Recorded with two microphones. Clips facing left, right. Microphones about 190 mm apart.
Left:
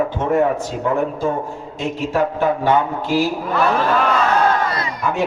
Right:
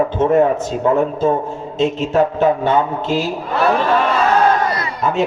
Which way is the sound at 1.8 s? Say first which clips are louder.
Right 4 dB; 25° right (ahead or behind).